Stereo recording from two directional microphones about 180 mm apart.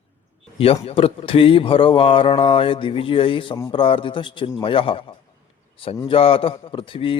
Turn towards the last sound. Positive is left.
turn(degrees=30)  # may be behind; listen again after turning